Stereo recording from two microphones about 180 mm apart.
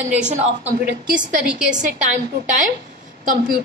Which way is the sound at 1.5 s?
5° right (ahead or behind).